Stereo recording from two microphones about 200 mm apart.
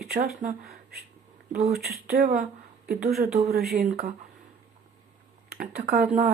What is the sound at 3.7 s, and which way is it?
Speech, 50° right (ahead or behind).